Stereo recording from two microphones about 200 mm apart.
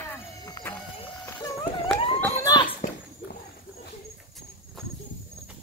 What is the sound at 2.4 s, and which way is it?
Children playing, 20° left (ahead or behind).